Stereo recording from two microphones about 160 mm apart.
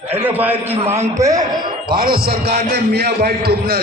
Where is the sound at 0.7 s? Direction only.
40° right (ahead or behind).